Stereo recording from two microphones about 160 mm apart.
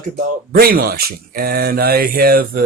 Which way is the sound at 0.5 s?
70° right (ahead or behind).